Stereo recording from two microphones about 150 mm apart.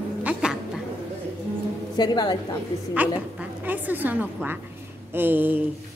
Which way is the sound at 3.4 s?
10° right (ahead or behind).